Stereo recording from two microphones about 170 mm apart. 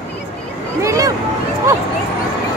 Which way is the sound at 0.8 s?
20° right (ahead or behind).